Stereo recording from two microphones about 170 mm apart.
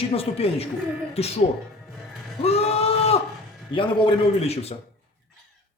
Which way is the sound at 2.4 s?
35° left (ahead or behind).